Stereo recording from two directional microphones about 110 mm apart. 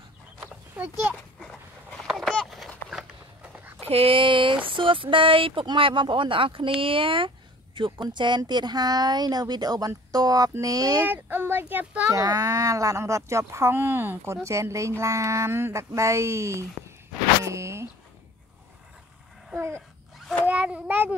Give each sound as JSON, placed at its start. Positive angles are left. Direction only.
{"t": 0.8, "sound": "speech", "side_deg": -15}
{"t": 1.4, "sound": "a sound", "side_deg": 0}
{"t": 3.8, "sound": "speech", "side_deg": -65}
{"t": 11.1, "sound": "speech", "side_deg": -20}
{"t": 12.1, "sound": "speech", "side_deg": -35}
{"t": 20.4, "sound": "a child's voice", "side_deg": -10}